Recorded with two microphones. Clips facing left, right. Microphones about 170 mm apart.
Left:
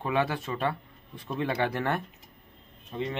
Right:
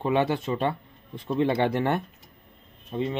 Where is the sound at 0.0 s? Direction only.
25° right (ahead or behind).